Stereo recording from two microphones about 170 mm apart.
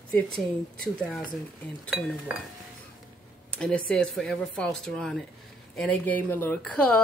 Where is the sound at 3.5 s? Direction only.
5° left (ahead or behind).